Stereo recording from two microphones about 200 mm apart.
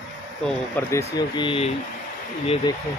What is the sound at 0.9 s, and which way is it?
Speech, 15° left (ahead or behind).